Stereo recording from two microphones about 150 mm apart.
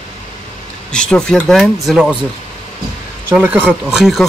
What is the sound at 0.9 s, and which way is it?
Speech, 5° left (ahead or behind).